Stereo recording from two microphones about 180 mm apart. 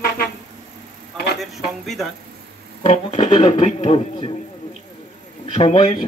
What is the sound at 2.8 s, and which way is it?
Speech, 40° left (ahead or behind).